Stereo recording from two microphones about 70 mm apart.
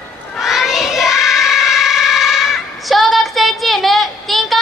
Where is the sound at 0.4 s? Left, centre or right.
Centre.